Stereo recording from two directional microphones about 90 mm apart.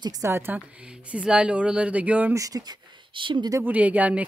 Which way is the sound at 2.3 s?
40° right (ahead or behind).